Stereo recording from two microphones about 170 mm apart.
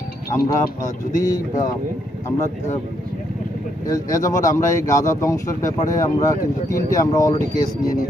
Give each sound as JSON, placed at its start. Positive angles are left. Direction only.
{"t": 0.4, "sound": "speech", "side_deg": 20}
{"t": 4.1, "sound": "speech", "side_deg": 20}